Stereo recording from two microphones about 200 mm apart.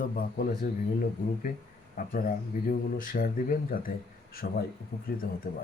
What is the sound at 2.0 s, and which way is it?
Speech, 45° left (ahead or behind).